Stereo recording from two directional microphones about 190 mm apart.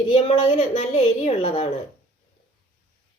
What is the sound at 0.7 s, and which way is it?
A woman's voice, 35° left (ahead or behind).